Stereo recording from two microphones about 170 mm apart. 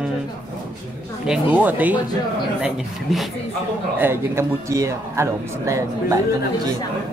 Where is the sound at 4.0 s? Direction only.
15° right (ahead or behind).